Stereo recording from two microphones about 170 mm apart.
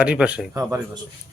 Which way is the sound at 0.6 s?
20° right (ahead or behind).